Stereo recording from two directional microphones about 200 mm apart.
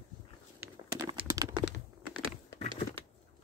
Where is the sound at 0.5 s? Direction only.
15° right (ahead or behind).